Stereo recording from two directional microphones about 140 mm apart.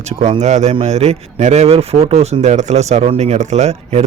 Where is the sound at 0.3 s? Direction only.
50° right (ahead or behind).